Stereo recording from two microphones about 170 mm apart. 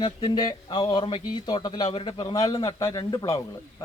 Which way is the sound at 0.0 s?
25° left (ahead or behind).